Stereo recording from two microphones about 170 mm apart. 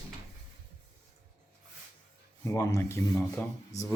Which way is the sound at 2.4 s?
15° left (ahead or behind).